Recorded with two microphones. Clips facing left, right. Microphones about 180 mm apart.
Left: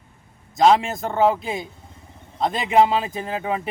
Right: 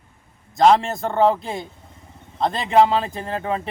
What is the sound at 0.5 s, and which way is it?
A man's voice, 5° left (ahead or behind).